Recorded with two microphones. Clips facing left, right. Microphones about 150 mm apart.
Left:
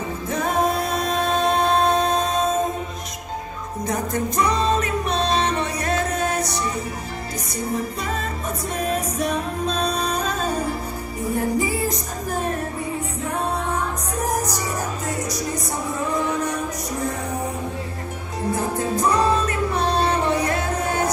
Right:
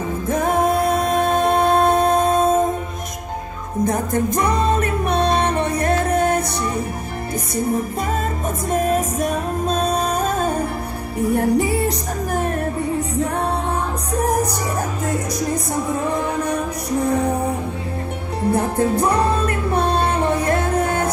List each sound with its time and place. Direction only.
0.3 s music: 50° right (ahead or behind)
3.8 s music: 55° right (ahead or behind)
8.7 s music: 45° right (ahead or behind)
11.1 s music: 65° right (ahead or behind)
18.5 s music: 60° right (ahead or behind)